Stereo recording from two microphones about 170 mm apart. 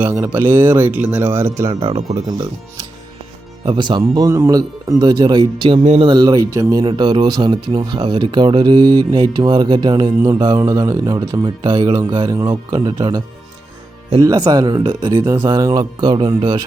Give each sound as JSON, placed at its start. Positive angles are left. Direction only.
{"t": 0.0, "sound": "speech", "side_deg": -15}
{"t": 1.8, "sound": "speech", "side_deg": -35}
{"t": 6.1, "sound": "speech", "side_deg": -25}